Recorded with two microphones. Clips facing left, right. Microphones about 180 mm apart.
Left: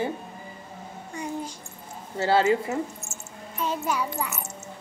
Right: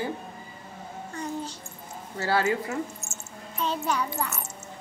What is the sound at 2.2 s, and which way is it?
Speech, 25° left (ahead or behind).